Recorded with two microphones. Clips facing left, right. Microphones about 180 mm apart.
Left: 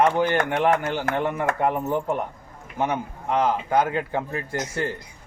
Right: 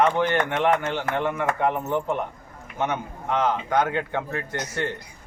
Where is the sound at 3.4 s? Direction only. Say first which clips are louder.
Left 1 dB; 10° left (ahead or behind).